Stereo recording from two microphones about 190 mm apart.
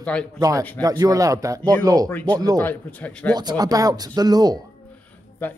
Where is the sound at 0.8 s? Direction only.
20° right (ahead or behind).